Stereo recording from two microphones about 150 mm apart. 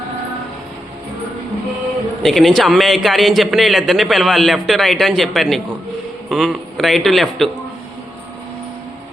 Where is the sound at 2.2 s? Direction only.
Centre (ahead or behind).